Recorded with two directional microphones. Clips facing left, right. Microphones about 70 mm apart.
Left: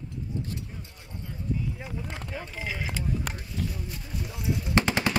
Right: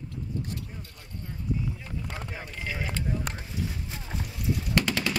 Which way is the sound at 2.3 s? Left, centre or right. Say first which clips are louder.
Left 3 dB; centre.